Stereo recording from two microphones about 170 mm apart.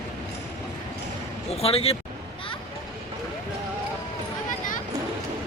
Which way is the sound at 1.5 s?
35° left (ahead or behind).